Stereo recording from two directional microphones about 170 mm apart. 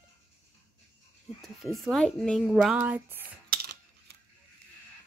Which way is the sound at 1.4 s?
Centre (ahead or behind).